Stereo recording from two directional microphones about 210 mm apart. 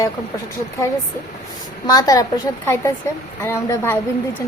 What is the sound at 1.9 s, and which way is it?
Speech, 15° left (ahead or behind).